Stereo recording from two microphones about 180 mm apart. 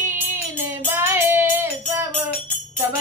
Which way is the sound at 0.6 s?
10° right (ahead or behind).